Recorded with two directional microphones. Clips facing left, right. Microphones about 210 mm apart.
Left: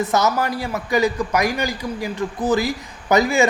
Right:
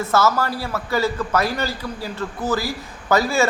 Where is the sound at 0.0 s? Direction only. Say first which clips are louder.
Even; 20° left (ahead or behind).